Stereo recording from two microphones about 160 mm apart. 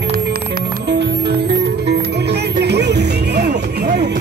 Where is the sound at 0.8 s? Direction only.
90° right.